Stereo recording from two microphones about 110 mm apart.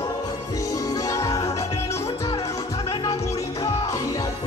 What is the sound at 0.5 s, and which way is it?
Music, 30° left (ahead or behind).